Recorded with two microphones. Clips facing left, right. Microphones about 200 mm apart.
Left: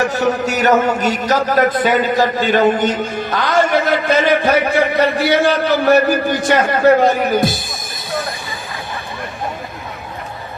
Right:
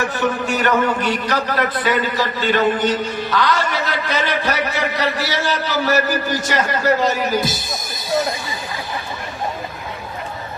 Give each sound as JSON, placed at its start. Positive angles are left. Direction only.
{"t": 0.0, "sound": "a man's voice", "side_deg": 40}